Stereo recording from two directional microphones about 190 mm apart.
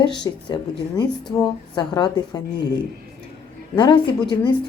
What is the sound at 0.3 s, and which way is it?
Speech, 20° left (ahead or behind).